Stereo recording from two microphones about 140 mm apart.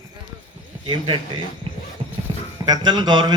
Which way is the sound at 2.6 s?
30° right (ahead or behind).